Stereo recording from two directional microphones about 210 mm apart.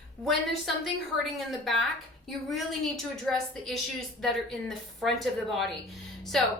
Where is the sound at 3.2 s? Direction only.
Centre (ahead or behind).